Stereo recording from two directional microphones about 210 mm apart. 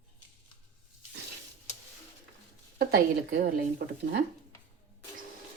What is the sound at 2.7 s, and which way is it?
A woman's voice, 50° right (ahead or behind).